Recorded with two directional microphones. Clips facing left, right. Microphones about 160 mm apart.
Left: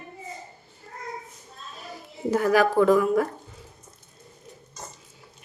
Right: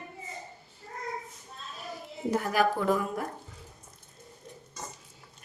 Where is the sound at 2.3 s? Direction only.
90° left.